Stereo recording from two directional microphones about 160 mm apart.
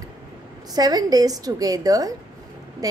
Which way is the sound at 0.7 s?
25° right (ahead or behind).